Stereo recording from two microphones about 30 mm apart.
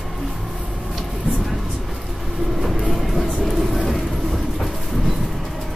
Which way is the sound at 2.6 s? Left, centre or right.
Centre.